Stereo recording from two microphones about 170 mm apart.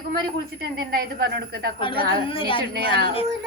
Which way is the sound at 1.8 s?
30° left (ahead or behind).